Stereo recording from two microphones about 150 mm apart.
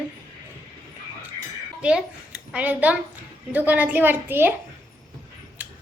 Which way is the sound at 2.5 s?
10° right (ahead or behind).